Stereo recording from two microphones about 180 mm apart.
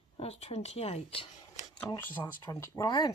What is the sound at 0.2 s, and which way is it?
Speech, 35° left (ahead or behind).